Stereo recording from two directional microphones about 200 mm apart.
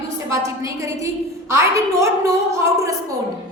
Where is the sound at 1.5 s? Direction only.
15° right (ahead or behind).